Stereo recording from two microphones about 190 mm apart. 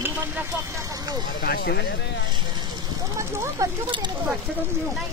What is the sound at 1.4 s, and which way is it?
Speech, 55° left (ahead or behind).